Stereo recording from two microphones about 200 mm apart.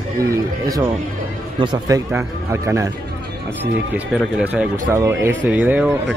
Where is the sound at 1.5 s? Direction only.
20° right (ahead or behind).